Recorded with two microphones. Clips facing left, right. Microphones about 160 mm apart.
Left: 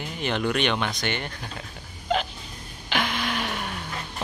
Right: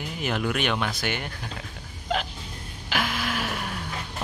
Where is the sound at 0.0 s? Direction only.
5° right (ahead or behind).